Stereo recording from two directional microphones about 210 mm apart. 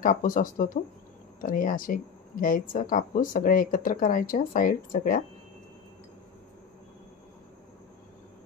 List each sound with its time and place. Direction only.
0.0 s speech: 40° left (ahead or behind)